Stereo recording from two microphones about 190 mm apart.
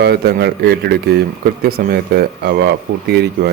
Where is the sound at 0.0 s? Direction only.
55° right (ahead or behind).